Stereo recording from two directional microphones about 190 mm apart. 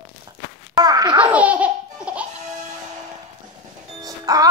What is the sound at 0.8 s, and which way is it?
Babbling, 20° right (ahead or behind).